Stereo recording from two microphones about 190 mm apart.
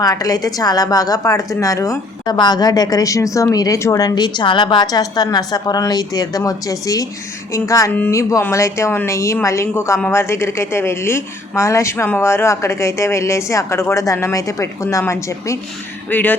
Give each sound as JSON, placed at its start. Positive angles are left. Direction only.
{"t": 0.0, "sound": "a woman's voice", "side_deg": 20}